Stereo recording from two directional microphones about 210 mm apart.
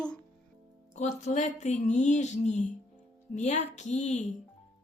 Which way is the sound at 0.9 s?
35° left (ahead or behind).